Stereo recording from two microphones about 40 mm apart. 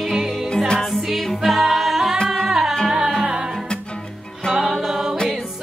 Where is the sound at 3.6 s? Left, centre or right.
Left.